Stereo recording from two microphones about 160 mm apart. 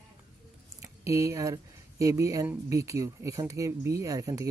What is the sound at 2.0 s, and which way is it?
Speech, 20° right (ahead or behind).